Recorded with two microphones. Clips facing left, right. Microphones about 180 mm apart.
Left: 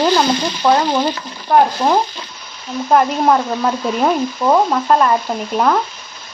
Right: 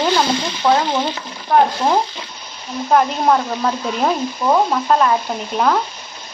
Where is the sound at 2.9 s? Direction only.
Centre (ahead or behind).